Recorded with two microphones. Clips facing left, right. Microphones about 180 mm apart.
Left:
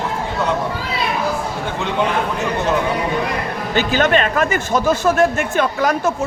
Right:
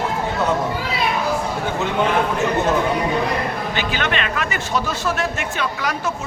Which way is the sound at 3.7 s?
45° left (ahead or behind).